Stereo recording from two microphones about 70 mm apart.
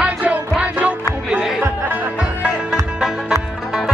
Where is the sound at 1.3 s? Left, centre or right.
Centre.